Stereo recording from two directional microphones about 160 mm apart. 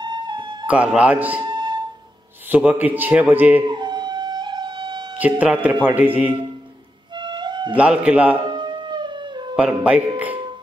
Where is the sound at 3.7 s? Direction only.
30° right (ahead or behind).